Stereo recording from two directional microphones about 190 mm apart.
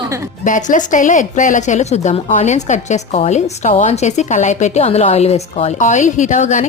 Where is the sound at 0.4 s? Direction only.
45° left (ahead or behind).